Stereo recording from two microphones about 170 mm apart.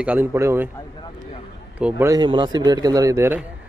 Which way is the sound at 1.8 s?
10° right (ahead or behind).